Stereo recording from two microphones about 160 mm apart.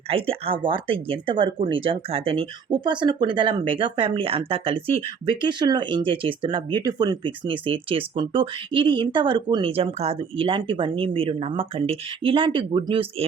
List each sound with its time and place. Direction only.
0.1 s speech: 35° right (ahead or behind)